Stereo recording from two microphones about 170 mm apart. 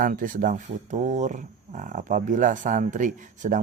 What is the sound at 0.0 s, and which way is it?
Speech, 55° right (ahead or behind).